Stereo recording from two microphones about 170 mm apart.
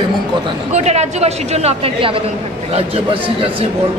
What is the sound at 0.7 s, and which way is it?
A woman's voice, 40° right (ahead or behind).